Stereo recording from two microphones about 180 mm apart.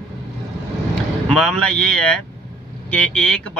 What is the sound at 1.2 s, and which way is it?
Speech, 5° left (ahead or behind).